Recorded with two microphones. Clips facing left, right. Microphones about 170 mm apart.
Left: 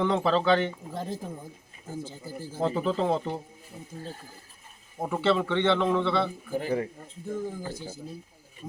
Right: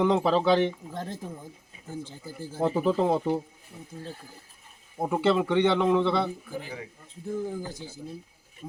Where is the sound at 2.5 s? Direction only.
10° right (ahead or behind).